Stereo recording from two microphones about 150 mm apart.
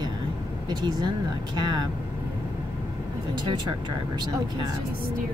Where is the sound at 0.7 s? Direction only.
30° right (ahead or behind).